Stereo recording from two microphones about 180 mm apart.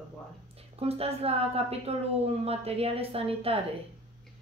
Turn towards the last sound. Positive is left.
turn(degrees=-30)  # may be behind; listen again after turning